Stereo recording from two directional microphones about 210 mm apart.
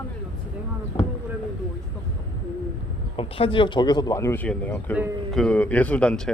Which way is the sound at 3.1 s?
25° left (ahead or behind).